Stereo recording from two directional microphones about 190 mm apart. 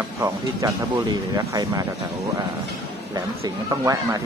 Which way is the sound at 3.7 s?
20° right (ahead or behind).